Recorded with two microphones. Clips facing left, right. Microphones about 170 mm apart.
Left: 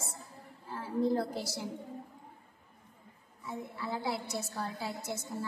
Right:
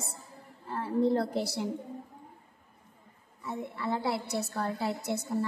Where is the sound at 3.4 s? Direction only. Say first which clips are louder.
Right 5 dB; 65° right (ahead or behind).